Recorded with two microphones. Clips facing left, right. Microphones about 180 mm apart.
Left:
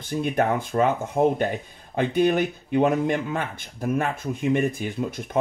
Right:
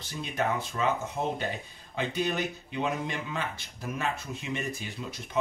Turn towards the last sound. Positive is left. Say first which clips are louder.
# left 10 dB
turn(degrees=50)  # may be behind; listen again after turning